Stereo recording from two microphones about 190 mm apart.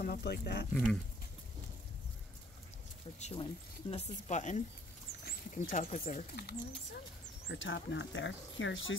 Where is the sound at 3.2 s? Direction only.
35° left (ahead or behind).